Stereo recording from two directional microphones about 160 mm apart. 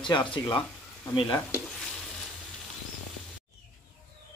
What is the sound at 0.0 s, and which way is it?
Speech, 30° left (ahead or behind).